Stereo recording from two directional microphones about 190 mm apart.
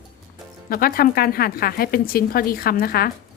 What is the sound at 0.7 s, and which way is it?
Speech, 50° left (ahead or behind).